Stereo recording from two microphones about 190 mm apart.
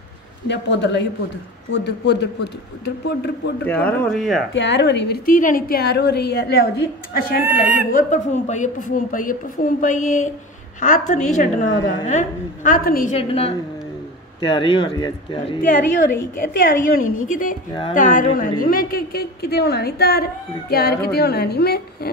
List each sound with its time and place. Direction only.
0.5 s a woman's voice: 65° left (ahead or behind)
3.6 s a man's voice: 5° left (ahead or behind)
4.6 s a woman's voice: 70° left (ahead or behind); by 7.4 s 55° left (ahead or behind)
7.9 s a woman's voice: 40° left (ahead or behind)
13.1 s a woman's voice: 30° left (ahead or behind)
15.6 s a woman's voice: 45° left (ahead or behind)